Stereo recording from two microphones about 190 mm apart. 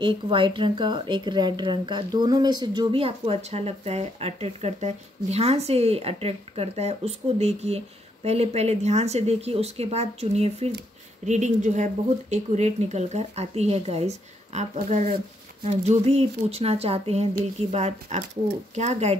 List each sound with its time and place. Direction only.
0.0 s speech: 25° right (ahead or behind)